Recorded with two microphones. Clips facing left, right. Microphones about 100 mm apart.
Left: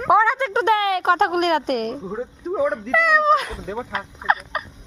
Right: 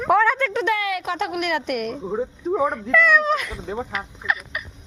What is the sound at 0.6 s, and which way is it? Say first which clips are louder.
Speech: left 4 dB; 35° left (ahead or behind).